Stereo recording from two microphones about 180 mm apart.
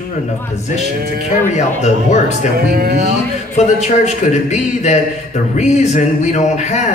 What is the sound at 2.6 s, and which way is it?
Music, 60° right (ahead or behind).